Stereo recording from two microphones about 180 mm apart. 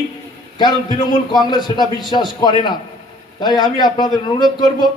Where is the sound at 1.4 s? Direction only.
25° left (ahead or behind).